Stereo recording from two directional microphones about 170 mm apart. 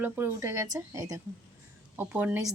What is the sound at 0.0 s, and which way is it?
Speech, 15° right (ahead or behind).